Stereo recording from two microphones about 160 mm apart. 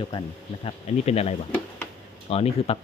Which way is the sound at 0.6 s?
40° left (ahead or behind).